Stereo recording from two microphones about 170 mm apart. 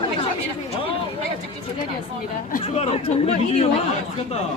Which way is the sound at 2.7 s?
40° left (ahead or behind).